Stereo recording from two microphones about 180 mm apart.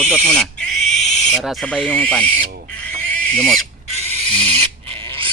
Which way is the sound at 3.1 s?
5° left (ahead or behind).